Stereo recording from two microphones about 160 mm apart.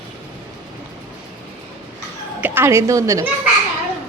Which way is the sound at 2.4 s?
10° right (ahead or behind).